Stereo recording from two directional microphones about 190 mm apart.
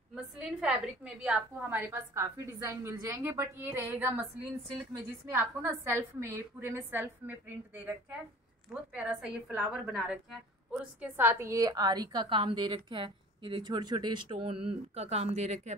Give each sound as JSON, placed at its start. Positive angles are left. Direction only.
{"t": 0.1, "sound": "a woman's voice", "side_deg": -5}
{"t": 8.9, "sound": "a woman's voice", "side_deg": -10}